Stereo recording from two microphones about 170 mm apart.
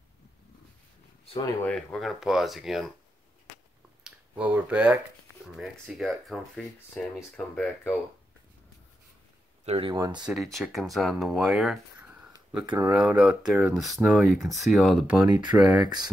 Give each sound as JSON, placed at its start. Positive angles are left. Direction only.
{"t": 1.4, "sound": "speech", "side_deg": 10}
{"t": 4.0, "sound": "a sound", "side_deg": -5}
{"t": 5.6, "sound": "speech", "side_deg": 0}
{"t": 9.7, "sound": "speech", "side_deg": -30}
{"t": 9.9, "sound": "speech", "side_deg": -20}
{"t": 10.2, "sound": "speech", "side_deg": 0}
{"t": 15.6, "sound": "speech", "side_deg": -25}